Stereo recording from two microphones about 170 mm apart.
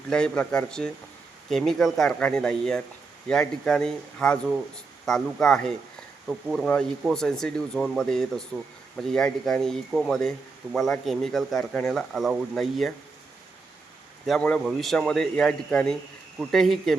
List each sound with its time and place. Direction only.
0.1 s speech: 5° left (ahead or behind)
14.3 s speech: 5° left (ahead or behind)